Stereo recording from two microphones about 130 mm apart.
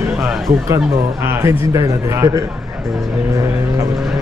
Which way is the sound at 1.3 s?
20° right (ahead or behind).